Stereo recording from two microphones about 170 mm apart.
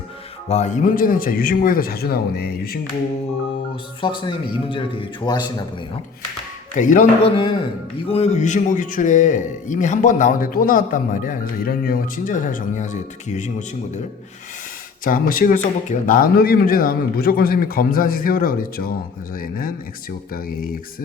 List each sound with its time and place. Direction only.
0.4 s speech: 40° left (ahead or behind); by 2.7 s 65° left (ahead or behind)
4.0 s a man's voice: 30° left (ahead or behind)
6.7 s a man's voice: 50° left (ahead or behind)
7.3 s a man's voice: 30° left (ahead or behind)
15.0 s speech: 55° left (ahead or behind)